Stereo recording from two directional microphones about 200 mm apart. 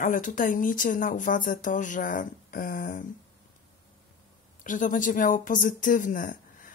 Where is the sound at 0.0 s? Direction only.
40° left (ahead or behind).